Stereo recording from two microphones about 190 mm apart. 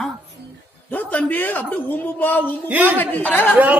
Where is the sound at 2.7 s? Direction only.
10° right (ahead or behind).